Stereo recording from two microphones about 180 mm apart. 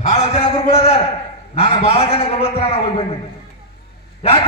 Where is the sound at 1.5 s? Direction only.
35° left (ahead or behind).